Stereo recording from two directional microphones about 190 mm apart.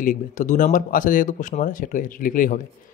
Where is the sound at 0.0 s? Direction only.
45° left (ahead or behind).